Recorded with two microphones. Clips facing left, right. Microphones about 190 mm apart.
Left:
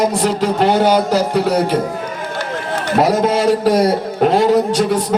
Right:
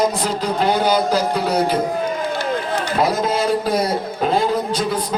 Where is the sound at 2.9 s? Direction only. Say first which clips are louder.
Left 6 dB; 70° left (ahead or behind).